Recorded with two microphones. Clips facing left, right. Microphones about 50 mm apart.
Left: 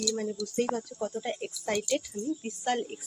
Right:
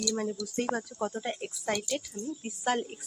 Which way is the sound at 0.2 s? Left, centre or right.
Centre.